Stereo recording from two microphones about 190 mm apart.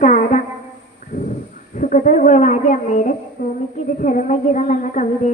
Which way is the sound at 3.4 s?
50° left (ahead or behind).